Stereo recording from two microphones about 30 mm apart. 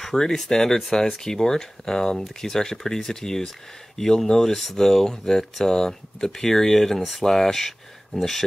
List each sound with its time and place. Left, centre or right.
0.2 s speech: centre